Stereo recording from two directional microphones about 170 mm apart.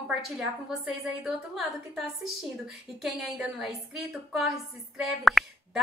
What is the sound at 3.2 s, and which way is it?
A woman's voice, centre (ahead or behind).